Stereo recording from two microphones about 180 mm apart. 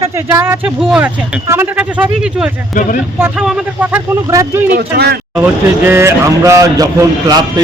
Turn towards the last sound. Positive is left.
turn(degrees=-20)  # may be behind; listen again after turning